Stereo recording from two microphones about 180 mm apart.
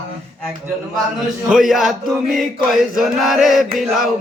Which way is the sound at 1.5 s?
Centre (ahead or behind).